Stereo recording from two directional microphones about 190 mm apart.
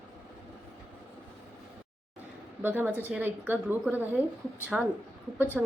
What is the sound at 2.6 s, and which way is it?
A woman's voice, 10° right (ahead or behind).